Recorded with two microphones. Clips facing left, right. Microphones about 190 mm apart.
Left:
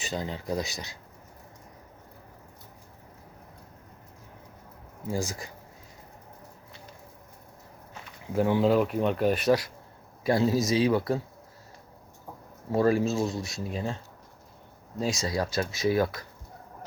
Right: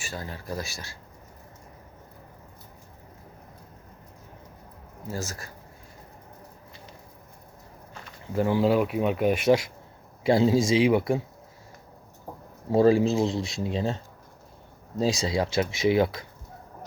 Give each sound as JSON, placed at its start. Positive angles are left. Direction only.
{"t": 0.0, "sound": "speech", "side_deg": 20}
{"t": 5.0, "sound": "speech", "side_deg": 15}
{"t": 8.3, "sound": "speech", "side_deg": 0}
{"t": 10.2, "sound": "speech", "side_deg": -25}
{"t": 12.7, "sound": "speech", "side_deg": -30}
{"t": 13.1, "sound": "speech", "side_deg": -15}
{"t": 14.9, "sound": "speech", "side_deg": -30}